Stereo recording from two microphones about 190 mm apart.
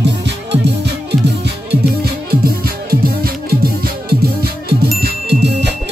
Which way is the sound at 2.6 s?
50° right (ahead or behind).